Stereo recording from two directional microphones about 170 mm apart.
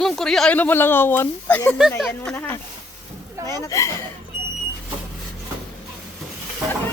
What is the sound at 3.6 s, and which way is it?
Speech, 15° left (ahead or behind).